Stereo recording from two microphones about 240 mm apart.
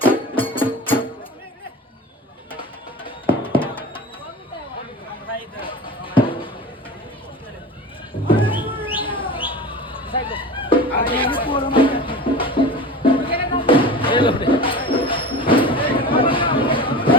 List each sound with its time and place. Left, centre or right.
0.0 s music: left
3.0 s music: left
5.5 s basketball bounce: left
8.3 s music: left
9.0 s bird: left
9.5 s music: left